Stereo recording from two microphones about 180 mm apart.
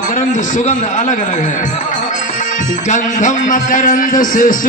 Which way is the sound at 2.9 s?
45° left (ahead or behind).